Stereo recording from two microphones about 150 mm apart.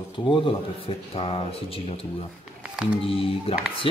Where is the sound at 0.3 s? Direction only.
35° left (ahead or behind).